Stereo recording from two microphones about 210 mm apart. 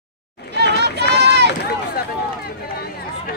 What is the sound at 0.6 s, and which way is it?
Run, 55° right (ahead or behind).